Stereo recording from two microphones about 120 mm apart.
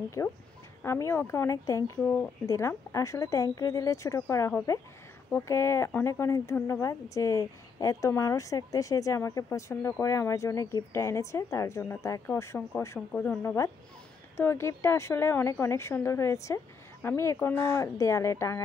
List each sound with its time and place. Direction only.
0.2 s a woman's voice: 25° left (ahead or behind)